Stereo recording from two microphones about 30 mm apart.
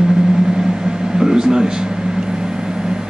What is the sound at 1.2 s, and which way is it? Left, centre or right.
Speech, right.